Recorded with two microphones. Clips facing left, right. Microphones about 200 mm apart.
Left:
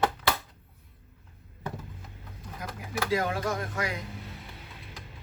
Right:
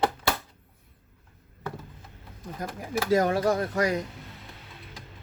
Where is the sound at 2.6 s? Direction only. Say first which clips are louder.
Right 4 dB; 45° right (ahead or behind).